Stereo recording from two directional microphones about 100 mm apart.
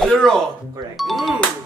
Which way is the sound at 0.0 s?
5° left (ahead or behind).